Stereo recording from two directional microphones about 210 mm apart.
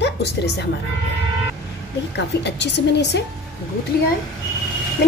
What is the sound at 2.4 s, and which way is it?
Speech, 55° left (ahead or behind).